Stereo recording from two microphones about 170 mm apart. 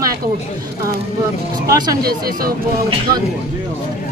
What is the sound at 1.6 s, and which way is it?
Speech, 25° right (ahead or behind).